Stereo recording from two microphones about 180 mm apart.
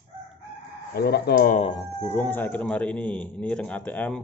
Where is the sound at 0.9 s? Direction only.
60° left (ahead or behind).